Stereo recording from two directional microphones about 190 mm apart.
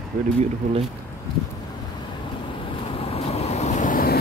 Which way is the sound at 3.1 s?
35° left (ahead or behind).